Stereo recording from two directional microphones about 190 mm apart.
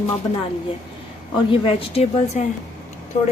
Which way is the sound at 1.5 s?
30° left (ahead or behind).